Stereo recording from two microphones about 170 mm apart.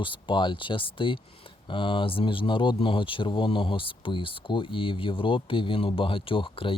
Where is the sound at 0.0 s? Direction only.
30° left (ahead or behind).